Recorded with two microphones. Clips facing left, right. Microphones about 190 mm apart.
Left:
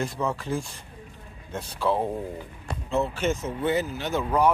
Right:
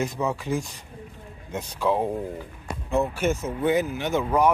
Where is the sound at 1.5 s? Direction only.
15° right (ahead or behind).